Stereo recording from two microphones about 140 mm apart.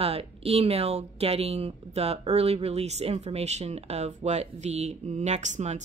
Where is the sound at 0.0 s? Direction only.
45° right (ahead or behind).